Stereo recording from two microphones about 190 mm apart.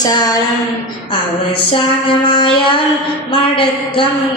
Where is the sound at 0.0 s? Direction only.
20° left (ahead or behind).